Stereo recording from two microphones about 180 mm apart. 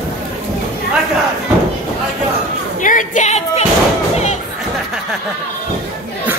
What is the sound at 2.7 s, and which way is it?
Music, 45° left (ahead or behind).